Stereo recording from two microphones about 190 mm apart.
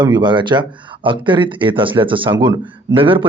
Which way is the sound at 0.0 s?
25° right (ahead or behind).